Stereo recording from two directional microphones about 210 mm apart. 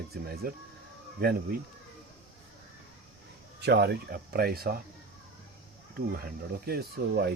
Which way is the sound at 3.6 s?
50° right (ahead or behind).